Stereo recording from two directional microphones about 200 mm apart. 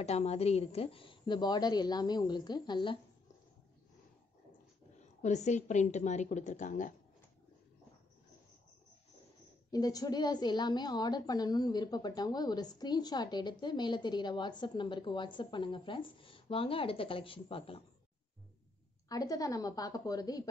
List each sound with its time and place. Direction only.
0.0 s a woman's voice: 30° left (ahead or behind)
5.2 s a woman's voice: 35° left (ahead or behind)
9.7 s a woman's voice: 20° left (ahead or behind)
19.0 s a woman's voice: 20° left (ahead or behind)